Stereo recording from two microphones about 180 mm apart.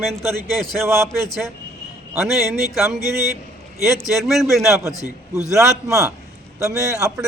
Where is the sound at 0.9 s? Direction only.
15° right (ahead or behind).